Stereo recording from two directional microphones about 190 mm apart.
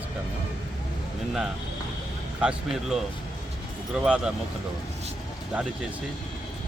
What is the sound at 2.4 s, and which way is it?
Speech, 5° right (ahead or behind).